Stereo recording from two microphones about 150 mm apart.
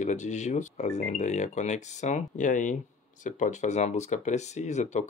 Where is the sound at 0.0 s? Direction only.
50° left (ahead or behind).